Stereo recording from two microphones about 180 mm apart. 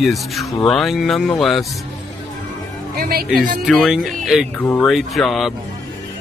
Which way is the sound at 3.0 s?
55° right (ahead or behind).